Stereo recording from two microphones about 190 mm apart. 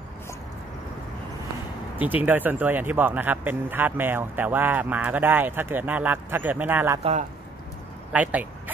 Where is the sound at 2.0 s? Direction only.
10° right (ahead or behind).